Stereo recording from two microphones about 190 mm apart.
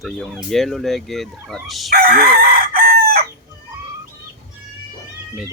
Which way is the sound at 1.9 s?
55° right (ahead or behind).